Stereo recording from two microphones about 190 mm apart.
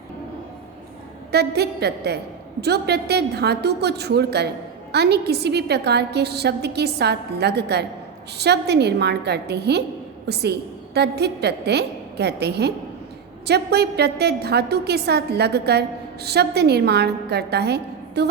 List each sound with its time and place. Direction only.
1.3 s a woman's voice: 60° right (ahead or behind)